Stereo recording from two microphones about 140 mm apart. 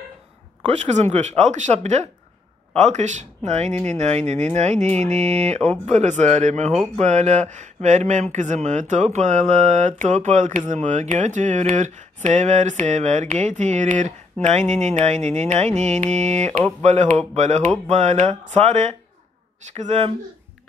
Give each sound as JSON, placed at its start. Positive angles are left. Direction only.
{"t": 0.7, "sound": "speech", "side_deg": -55}